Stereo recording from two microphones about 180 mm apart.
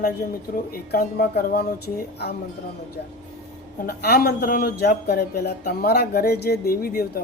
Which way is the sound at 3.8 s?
60° left (ahead or behind).